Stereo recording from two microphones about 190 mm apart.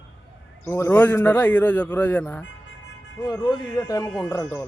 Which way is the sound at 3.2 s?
20° left (ahead or behind).